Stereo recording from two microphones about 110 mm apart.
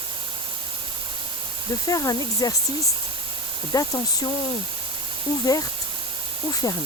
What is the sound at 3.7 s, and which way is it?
Speech, 35° left (ahead or behind).